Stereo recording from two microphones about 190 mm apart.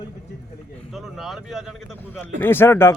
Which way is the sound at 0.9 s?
Centre (ahead or behind).